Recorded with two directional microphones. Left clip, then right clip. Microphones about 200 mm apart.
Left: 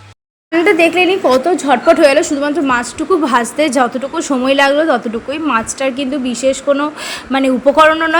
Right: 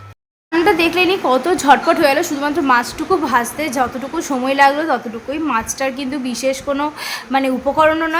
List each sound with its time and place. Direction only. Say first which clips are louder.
0.5 s speech: left 4 dB; 5° left (ahead or behind)
2.0 s a woman's voice: left 5 dB; 15° left (ahead or behind)